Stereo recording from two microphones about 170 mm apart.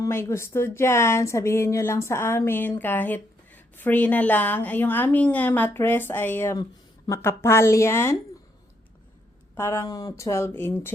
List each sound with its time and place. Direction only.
0.0 s speech: 15° left (ahead or behind)
9.6 s speech: 15° left (ahead or behind)